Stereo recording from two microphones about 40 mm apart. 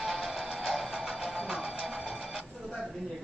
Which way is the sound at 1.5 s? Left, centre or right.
Centre.